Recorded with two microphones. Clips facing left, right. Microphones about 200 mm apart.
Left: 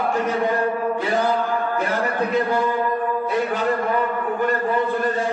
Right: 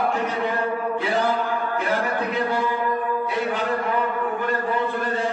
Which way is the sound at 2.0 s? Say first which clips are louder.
Left 3 dB; 45° left (ahead or behind).